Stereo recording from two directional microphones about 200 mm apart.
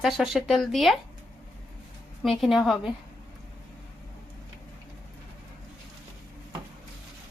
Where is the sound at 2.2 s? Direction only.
Centre (ahead or behind).